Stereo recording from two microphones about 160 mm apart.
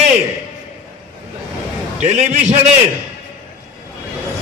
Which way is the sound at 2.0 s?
45° right (ahead or behind).